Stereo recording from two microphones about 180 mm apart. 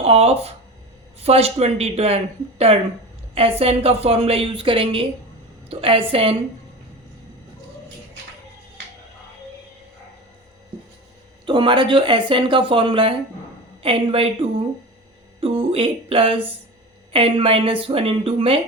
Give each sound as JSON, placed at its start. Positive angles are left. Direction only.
{"t": 0.0, "sound": "speech", "side_deg": -35}
{"t": 11.4, "sound": "speech", "side_deg": -25}
{"t": 15.4, "sound": "speech", "side_deg": -30}